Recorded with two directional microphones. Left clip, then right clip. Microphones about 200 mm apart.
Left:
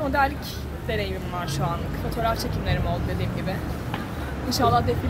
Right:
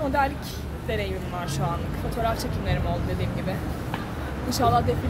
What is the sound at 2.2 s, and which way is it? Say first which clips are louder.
Speech: left 1 dB; 5° right (ahead or behind).